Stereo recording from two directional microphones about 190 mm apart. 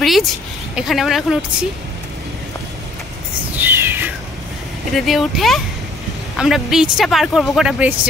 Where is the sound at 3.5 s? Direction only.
10° right (ahead or behind).